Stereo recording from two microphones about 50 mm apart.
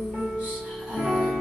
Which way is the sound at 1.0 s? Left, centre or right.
Centre.